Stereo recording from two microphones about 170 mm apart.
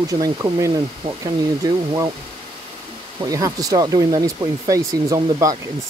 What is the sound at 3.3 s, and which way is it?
Speech, 20° right (ahead or behind).